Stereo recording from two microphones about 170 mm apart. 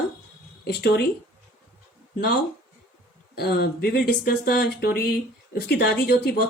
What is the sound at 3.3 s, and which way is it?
Speech, 70° left (ahead or behind).